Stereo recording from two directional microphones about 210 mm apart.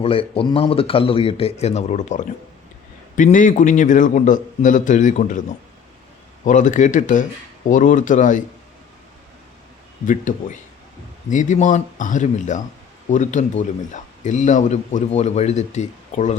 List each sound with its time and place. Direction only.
0.0 s speech: 25° left (ahead or behind)
6.4 s speech: 35° left (ahead or behind)
11.3 s speech: 35° left (ahead or behind)